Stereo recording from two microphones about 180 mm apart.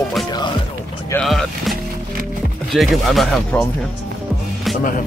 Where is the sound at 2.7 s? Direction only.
Centre (ahead or behind).